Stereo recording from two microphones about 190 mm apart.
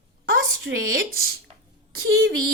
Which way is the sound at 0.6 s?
85° right.